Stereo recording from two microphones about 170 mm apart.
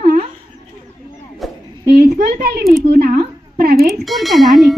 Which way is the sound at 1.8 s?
70° right (ahead or behind).